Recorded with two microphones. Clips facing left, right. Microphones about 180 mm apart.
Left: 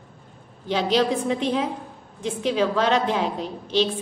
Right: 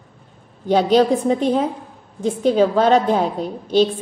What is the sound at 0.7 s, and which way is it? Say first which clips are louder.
A woman's voice: right 7 dB; 45° right (ahead or behind).